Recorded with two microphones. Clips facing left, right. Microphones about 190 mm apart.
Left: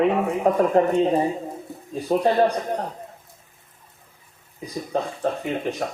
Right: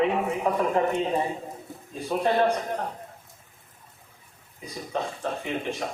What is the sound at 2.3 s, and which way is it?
Speech, 35° left (ahead or behind).